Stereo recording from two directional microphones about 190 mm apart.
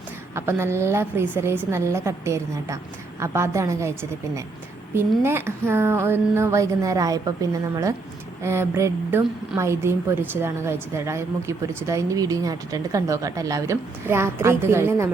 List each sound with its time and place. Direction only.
0.3 s a woman's voice: 10° right (ahead or behind)
4.9 s a woman's voice: 10° right (ahead or behind)
8.4 s a woman's voice: 15° right (ahead or behind)